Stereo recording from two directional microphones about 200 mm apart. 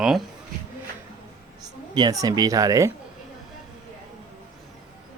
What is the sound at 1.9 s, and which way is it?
Speech, 20° right (ahead or behind).